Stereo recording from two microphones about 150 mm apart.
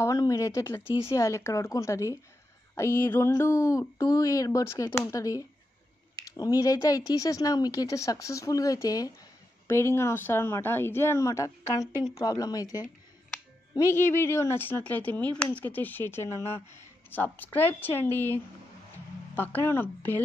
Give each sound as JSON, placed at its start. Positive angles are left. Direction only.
{"t": 0.0, "sound": "speech", "side_deg": 20}